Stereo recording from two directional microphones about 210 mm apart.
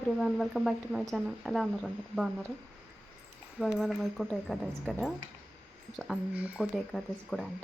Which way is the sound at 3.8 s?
Centre (ahead or behind).